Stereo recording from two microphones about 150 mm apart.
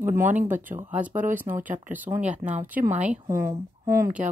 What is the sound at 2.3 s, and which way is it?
Speech, 50° right (ahead or behind).